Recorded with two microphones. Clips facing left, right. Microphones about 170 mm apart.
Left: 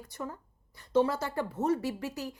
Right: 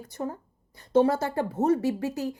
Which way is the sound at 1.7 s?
25° right (ahead or behind).